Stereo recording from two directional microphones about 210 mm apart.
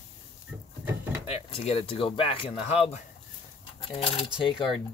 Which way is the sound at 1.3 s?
30° left (ahead or behind).